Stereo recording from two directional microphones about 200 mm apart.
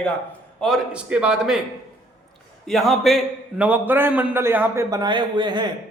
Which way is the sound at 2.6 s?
Centre (ahead or behind).